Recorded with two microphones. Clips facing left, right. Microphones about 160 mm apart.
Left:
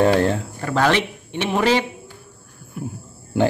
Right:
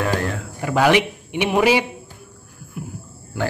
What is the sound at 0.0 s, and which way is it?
Speech, 30° left (ahead or behind).